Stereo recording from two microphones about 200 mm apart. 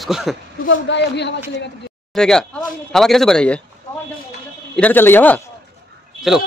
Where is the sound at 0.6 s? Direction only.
65° left (ahead or behind).